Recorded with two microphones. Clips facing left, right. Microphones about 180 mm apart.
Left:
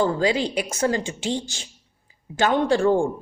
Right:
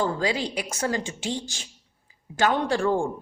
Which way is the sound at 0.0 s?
25° left (ahead or behind).